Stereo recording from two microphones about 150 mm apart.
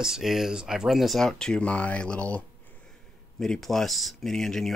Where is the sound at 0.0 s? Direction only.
5° right (ahead or behind).